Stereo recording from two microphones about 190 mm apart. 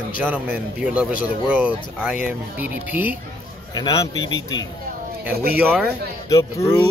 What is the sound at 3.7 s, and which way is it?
Speech, 20° left (ahead or behind).